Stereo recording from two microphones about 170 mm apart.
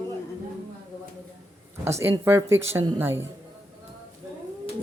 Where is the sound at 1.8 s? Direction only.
15° right (ahead or behind).